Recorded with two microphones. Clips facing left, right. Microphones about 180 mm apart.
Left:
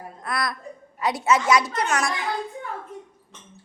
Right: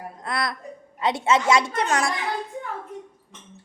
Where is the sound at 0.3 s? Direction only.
25° right (ahead or behind).